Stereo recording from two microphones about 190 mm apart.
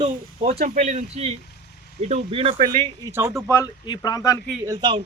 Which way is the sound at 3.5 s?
20° left (ahead or behind).